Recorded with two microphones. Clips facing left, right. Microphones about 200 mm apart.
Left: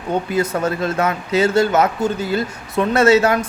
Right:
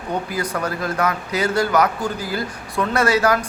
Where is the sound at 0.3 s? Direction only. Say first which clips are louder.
Left 5 dB; 25° left (ahead or behind).